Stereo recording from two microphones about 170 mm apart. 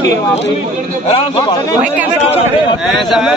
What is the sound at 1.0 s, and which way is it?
Speech, 35° left (ahead or behind).